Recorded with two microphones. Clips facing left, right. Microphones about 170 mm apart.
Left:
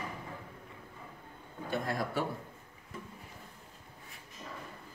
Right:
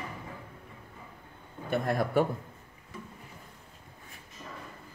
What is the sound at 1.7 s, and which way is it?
Speech, 55° right (ahead or behind).